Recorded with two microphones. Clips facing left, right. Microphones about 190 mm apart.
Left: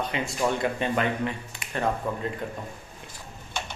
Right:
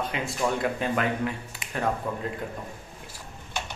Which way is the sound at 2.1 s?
5° right (ahead or behind).